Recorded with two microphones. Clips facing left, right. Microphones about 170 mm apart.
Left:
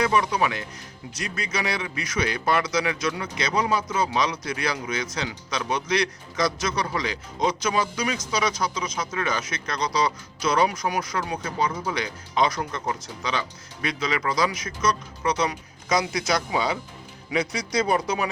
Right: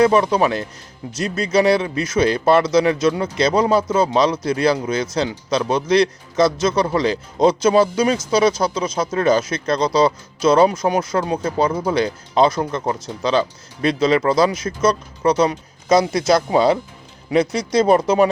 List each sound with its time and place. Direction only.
0.0 s speech: 30° right (ahead or behind)